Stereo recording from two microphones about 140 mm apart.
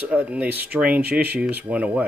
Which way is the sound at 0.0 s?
10° right (ahead or behind).